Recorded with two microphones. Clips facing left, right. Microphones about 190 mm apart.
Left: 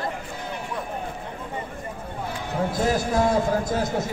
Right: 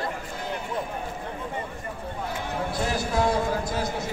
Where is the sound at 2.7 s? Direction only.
45° left (ahead or behind).